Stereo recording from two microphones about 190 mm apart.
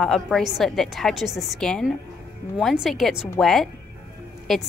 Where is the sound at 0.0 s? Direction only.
Centre (ahead or behind).